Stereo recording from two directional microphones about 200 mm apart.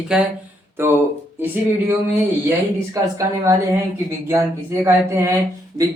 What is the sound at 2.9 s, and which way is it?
Speech, 15° right (ahead or behind).